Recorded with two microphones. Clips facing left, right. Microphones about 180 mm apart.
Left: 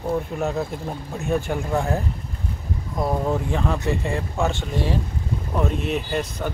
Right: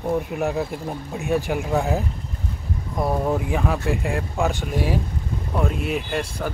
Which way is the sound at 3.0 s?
10° right (ahead or behind).